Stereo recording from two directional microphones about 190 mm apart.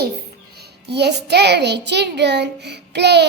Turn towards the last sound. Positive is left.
turn(degrees=-60)  # may be behind; listen again after turning